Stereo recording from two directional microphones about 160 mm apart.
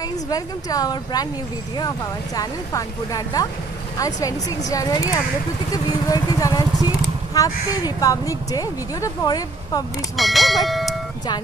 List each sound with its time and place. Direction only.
0.3 s speech: 25° left (ahead or behind)
10.1 s speech: centre (ahead or behind)